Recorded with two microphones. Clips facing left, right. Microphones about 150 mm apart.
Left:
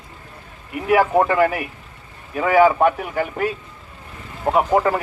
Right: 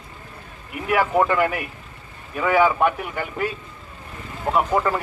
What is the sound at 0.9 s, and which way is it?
Speech, 35° left (ahead or behind).